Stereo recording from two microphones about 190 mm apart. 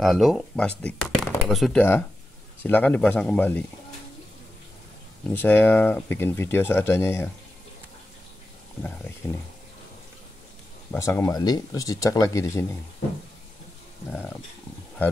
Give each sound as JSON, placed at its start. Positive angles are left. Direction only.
{"t": 0.0, "sound": "speech", "side_deg": 0}
{"t": 5.3, "sound": "speech", "side_deg": 10}
{"t": 8.8, "sound": "speech", "side_deg": 10}
{"t": 10.9, "sound": "speech", "side_deg": 15}
{"t": 14.1, "sound": "speech", "side_deg": 10}